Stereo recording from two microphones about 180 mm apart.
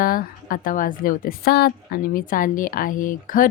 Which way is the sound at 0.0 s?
55° left (ahead or behind).